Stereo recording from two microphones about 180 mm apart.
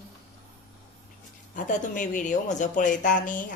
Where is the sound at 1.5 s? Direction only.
45° left (ahead or behind).